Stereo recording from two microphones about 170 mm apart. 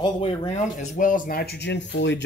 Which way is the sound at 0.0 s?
30° left (ahead or behind).